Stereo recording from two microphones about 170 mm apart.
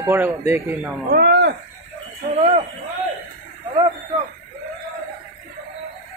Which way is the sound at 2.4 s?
40° right (ahead or behind).